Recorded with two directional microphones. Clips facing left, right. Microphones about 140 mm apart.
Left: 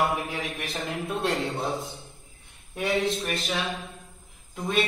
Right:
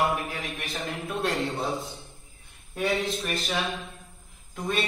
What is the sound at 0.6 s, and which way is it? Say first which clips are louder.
Speech: left 2 dB; centre (ahead or behind).